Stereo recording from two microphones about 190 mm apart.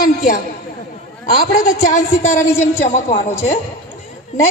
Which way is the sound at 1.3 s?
50° left (ahead or behind).